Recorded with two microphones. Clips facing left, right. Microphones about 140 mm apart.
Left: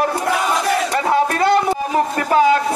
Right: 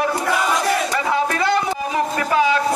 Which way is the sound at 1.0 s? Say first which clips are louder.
Left 6 dB; 50° left (ahead or behind).